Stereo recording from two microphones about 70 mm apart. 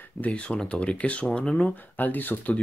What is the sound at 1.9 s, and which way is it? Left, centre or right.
Speech, left.